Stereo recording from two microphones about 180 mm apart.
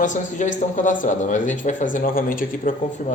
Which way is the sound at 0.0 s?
45° left (ahead or behind).